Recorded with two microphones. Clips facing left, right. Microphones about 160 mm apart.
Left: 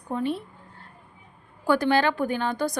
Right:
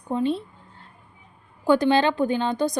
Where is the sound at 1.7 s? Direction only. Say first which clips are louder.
Right 3 dB; 20° right (ahead or behind).